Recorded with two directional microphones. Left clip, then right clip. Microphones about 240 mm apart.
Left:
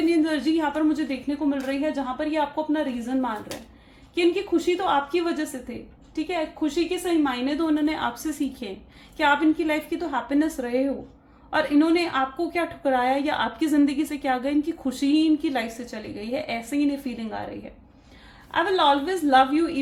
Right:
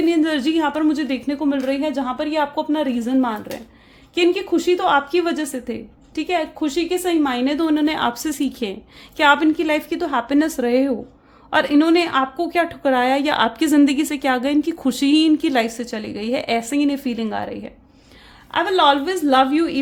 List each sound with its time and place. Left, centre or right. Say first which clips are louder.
0.1 s a woman's voice: right 4 dB; right
18.5 s a woman's voice: right 5 dB; right